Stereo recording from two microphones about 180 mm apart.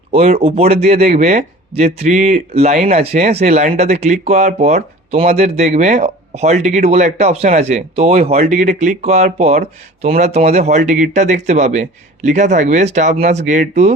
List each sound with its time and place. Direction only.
0.3 s speech: 30° right (ahead or behind)